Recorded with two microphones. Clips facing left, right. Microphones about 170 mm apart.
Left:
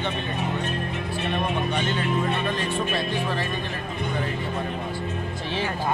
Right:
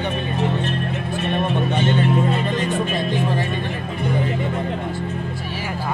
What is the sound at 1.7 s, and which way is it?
A man's voice, 25° right (ahead or behind).